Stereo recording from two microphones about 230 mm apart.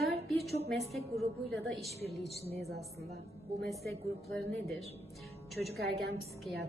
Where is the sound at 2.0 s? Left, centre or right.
Right.